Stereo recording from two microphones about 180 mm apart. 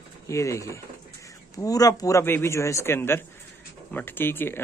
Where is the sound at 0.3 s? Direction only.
15° left (ahead or behind).